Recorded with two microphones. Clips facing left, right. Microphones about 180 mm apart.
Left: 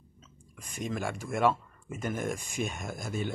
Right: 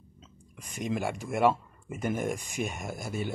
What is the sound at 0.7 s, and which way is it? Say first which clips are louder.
Speech: right 3 dB; 15° right (ahead or behind).